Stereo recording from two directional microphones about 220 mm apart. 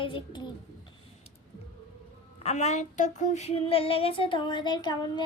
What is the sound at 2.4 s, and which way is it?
Child singing, 30° left (ahead or behind).